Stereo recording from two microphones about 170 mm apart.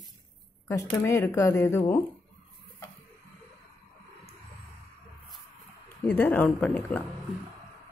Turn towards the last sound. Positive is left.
turn(degrees=5)  # may be behind; listen again after turning